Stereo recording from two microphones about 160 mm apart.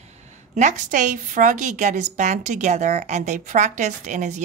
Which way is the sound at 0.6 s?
50° right (ahead or behind).